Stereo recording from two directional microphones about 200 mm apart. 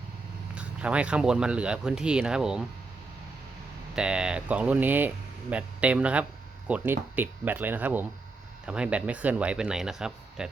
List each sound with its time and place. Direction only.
0.5 s speech: 5° right (ahead or behind)
3.9 s speech: 5° right (ahead or behind)